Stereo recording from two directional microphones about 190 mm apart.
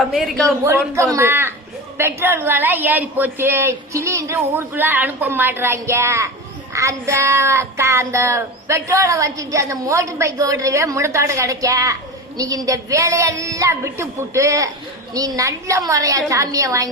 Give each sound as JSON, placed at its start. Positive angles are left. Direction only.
{"t": 0.0, "sound": "a woman's voice", "side_deg": 0}
{"t": 0.6, "sound": "child singing", "side_deg": -15}